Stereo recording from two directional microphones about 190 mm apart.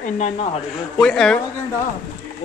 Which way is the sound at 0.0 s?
40° left (ahead or behind).